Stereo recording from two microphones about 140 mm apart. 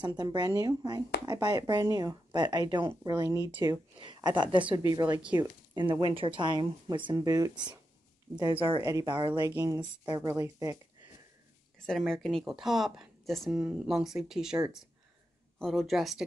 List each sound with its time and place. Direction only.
0.0 s speech: 30° right (ahead or behind)
8.8 s speech: 25° right (ahead or behind)
9.5 s speech: 20° right (ahead or behind)
11.8 s speech: 5° left (ahead or behind)
15.6 s speech: centre (ahead or behind)